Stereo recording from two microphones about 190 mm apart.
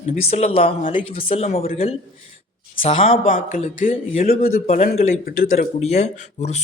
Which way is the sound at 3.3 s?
40° left (ahead or behind).